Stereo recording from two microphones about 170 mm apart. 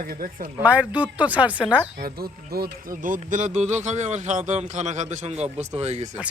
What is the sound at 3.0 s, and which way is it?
Speech, 50° right (ahead or behind).